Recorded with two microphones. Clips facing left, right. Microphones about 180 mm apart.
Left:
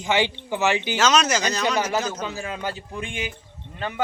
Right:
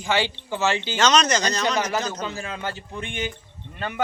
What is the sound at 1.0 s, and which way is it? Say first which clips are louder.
A man's voice: right 2 dB; 5° left (ahead or behind).